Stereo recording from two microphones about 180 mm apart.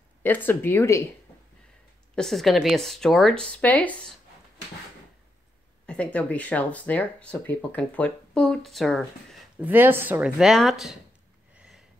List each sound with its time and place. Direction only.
0.2 s speech: 10° left (ahead or behind)
2.1 s speech: centre (ahead or behind)
5.9 s speech: 5° left (ahead or behind)
9.6 s speech: 10° right (ahead or behind)
11.5 s a sound: 5° right (ahead or behind)